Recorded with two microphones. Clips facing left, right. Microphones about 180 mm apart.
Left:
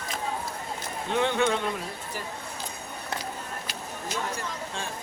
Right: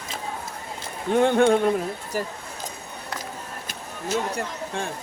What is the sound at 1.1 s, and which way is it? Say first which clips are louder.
Speech: right 7 dB; 50° right (ahead or behind).